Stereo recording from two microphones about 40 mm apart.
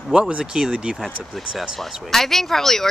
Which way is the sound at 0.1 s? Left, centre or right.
Right.